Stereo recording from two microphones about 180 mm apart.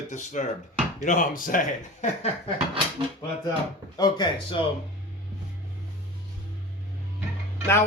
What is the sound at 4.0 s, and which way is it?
Speech, 25° left (ahead or behind).